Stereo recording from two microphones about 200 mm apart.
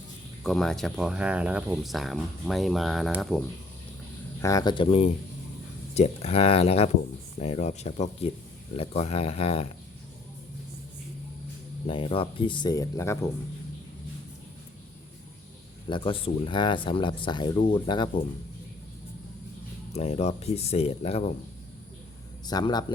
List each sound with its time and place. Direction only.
0.4 s speech: centre (ahead or behind)
4.4 s speech: 15° left (ahead or behind)
11.9 s speech: 25° left (ahead or behind)
15.9 s speech: 25° left (ahead or behind)
19.9 s speech: 30° left (ahead or behind)
22.4 s speech: 20° left (ahead or behind)